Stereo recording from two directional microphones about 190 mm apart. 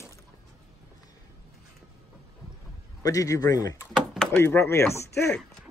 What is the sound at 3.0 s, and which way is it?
Speech, 20° left (ahead or behind).